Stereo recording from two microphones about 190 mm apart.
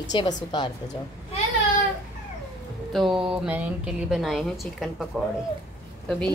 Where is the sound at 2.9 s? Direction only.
Centre (ahead or behind).